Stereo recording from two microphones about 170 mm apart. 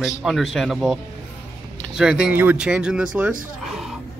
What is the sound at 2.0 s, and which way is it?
Speech, 5° right (ahead or behind).